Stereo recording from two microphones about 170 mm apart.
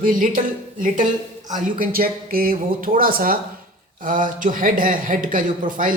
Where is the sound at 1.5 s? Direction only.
50° right (ahead or behind).